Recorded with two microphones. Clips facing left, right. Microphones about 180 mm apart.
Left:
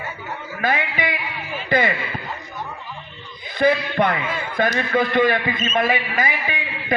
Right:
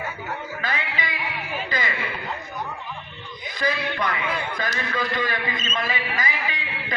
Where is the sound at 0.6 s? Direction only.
50° left (ahead or behind).